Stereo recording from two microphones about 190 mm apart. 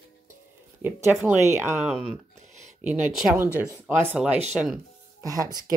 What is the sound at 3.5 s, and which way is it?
Speech, 15° right (ahead or behind).